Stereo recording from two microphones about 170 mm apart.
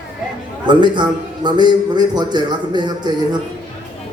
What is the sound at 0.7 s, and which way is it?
A man's voice, 25° right (ahead or behind).